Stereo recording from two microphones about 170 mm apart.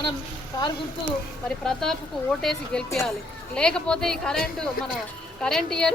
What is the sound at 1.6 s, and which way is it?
A woman's voice, 5° left (ahead or behind).